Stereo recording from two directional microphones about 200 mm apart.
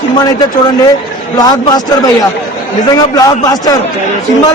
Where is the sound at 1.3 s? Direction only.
20° left (ahead or behind).